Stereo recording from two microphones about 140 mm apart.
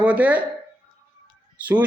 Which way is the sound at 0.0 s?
10° right (ahead or behind).